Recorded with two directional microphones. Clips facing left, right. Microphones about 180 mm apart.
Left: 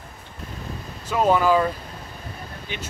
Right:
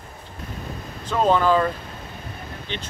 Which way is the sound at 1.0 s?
10° left (ahead or behind).